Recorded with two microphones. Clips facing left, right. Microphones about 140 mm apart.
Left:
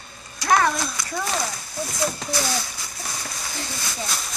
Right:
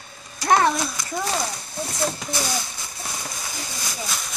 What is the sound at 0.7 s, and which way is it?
Horse, 10° right (ahead or behind).